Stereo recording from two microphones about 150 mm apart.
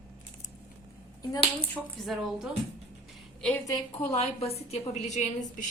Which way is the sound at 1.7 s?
Centre (ahead or behind).